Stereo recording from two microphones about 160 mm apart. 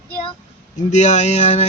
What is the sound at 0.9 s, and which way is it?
Speech, 45° left (ahead or behind).